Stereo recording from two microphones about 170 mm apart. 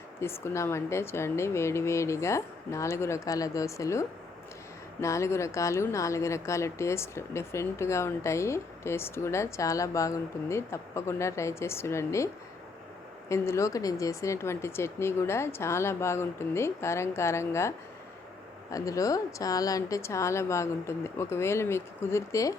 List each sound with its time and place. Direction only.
0.2 s speech: 15° left (ahead or behind)